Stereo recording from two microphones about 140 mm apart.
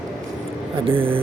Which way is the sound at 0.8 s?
40° right (ahead or behind).